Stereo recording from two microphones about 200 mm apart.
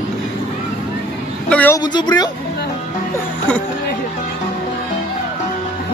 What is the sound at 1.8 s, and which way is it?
Speech, 20° left (ahead or behind).